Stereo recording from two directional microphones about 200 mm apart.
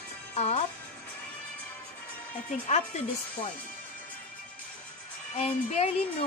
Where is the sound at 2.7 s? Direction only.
30° left (ahead or behind).